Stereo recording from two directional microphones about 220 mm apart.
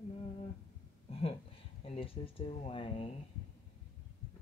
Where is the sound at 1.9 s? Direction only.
25° left (ahead or behind).